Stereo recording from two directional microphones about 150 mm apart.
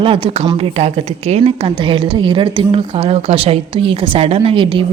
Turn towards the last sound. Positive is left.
turn(degrees=-35)  # may be behind; listen again after turning